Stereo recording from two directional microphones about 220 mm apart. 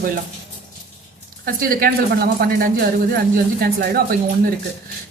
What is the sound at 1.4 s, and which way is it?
Speech, 40° right (ahead or behind).